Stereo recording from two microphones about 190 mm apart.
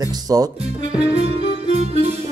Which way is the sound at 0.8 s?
30° right (ahead or behind).